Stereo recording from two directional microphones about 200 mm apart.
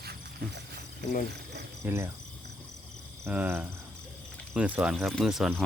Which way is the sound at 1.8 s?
15° right (ahead or behind).